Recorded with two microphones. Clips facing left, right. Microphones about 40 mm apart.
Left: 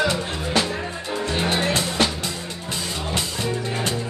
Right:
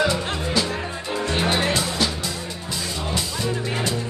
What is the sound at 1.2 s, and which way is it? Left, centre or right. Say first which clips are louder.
Music: right 1 dB; right.